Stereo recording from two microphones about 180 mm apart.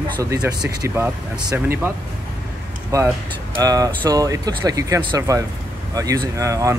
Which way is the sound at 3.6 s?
20° right (ahead or behind).